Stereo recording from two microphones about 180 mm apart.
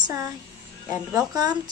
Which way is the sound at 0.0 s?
15° right (ahead or behind).